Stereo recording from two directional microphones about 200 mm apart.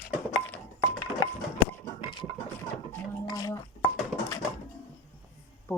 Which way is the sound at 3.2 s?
20° left (ahead or behind).